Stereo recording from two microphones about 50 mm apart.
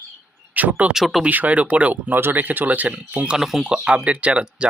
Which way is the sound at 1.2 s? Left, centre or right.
Right.